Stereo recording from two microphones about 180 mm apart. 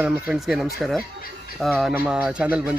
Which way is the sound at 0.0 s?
5° right (ahead or behind).